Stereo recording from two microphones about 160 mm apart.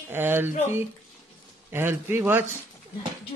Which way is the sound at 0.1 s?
15° right (ahead or behind).